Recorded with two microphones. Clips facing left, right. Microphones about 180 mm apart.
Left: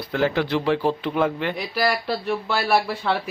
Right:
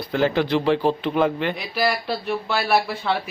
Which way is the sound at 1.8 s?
10° right (ahead or behind).